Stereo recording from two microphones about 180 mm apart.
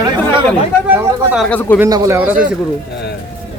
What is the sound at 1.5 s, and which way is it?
Speech, 10° left (ahead or behind).